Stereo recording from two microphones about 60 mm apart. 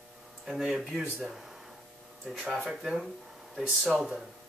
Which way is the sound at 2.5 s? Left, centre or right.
Centre.